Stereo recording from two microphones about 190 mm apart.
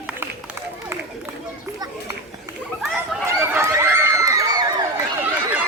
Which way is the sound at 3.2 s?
15° right (ahead or behind).